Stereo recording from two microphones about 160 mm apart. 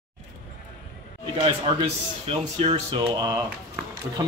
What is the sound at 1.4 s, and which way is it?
A man's voice, 30° right (ahead or behind).